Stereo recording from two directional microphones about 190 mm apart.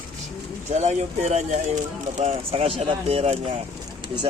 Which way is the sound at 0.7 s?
35° right (ahead or behind).